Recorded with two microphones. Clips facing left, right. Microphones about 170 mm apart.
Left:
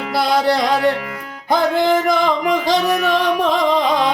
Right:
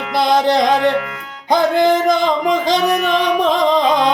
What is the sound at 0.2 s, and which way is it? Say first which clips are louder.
Music: right 3 dB; 20° right (ahead or behind).